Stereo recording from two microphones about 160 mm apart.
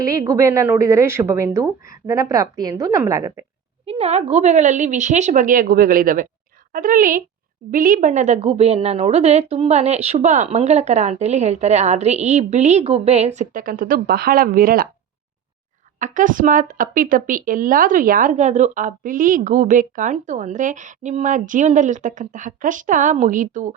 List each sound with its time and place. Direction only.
0.0 s a woman's voice: 20° right (ahead or behind)
3.8 s speech: 40° right (ahead or behind); by 14.8 s 65° right (ahead or behind)
16.0 s speech: 55° right (ahead or behind)